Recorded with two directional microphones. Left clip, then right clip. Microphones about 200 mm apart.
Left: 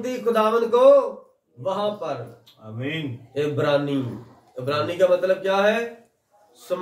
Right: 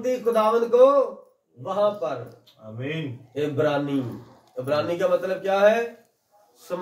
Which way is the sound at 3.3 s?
10° left (ahead or behind).